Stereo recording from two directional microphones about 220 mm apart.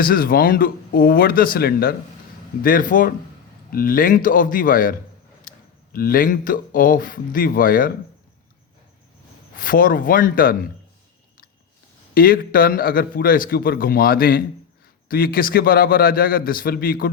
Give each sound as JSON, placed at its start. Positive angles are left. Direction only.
{"t": 0.0, "sound": "a man's voice", "side_deg": 40}
{"t": 9.6, "sound": "a man's voice", "side_deg": 40}
{"t": 12.1, "sound": "a man's voice", "side_deg": 40}